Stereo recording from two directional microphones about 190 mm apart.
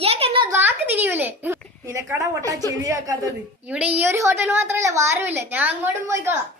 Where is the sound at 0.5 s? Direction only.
10° right (ahead or behind).